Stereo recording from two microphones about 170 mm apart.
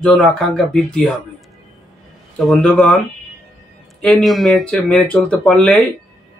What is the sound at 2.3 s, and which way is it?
Speech, centre (ahead or behind).